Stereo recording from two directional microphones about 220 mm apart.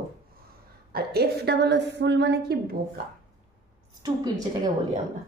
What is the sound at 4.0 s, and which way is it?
Speech, 15° right (ahead or behind).